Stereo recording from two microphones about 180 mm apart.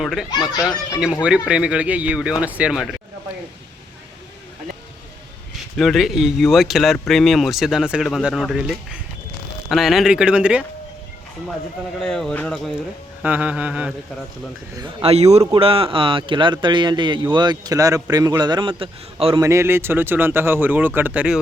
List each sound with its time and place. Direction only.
0.0 s a child's voice: centre (ahead or behind)
0.5 s a child's voice: 20° left (ahead or behind)
1.2 s speech: 5° right (ahead or behind)
5.7 s speech: centre (ahead or behind)
11.9 s speech: 5° left (ahead or behind)
13.2 s speech: 10° right (ahead or behind)
15.0 s a man's voice: 35° right (ahead or behind)
19.4 s speech: 15° right (ahead or behind)